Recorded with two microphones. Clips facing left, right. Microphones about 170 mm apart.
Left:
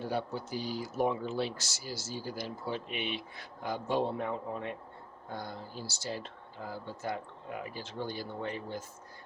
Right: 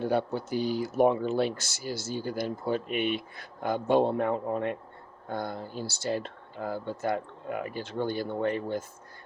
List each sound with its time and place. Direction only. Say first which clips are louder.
0.0 s speech: right 7 dB; 60° right (ahead or behind)